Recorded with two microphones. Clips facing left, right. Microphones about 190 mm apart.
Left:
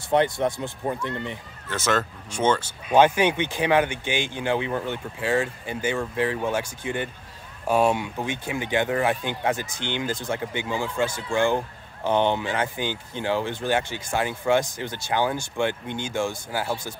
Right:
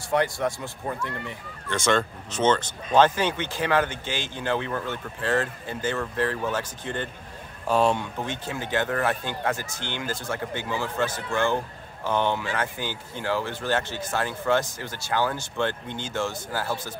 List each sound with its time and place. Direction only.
0.1 s speech: 20° left (ahead or behind)
1.7 s speech: 5° left (ahead or behind)